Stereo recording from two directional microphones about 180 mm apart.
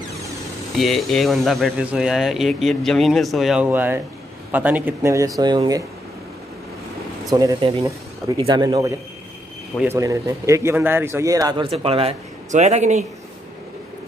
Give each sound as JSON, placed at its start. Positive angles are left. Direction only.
{"t": 0.7, "sound": "a man's voice", "side_deg": 0}
{"t": 7.2, "sound": "a man's voice", "side_deg": -20}